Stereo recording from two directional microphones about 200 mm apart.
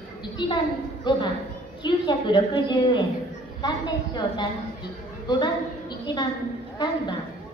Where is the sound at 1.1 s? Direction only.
20° left (ahead or behind).